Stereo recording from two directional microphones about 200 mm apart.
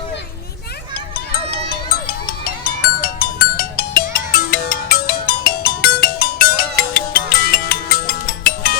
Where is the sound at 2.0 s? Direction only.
45° left (ahead or behind).